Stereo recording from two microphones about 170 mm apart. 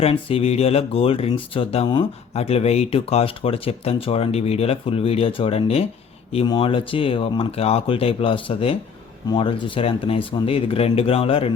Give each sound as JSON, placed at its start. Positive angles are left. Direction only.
{"t": 0.0, "sound": "speech", "side_deg": 35}